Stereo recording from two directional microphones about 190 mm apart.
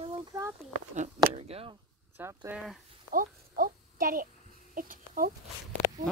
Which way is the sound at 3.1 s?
45° right (ahead or behind).